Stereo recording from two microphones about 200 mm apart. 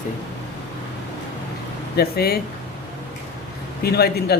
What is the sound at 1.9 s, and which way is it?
Speech, 50° left (ahead or behind).